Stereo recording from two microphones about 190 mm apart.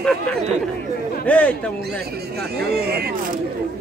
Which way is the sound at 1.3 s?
5° left (ahead or behind).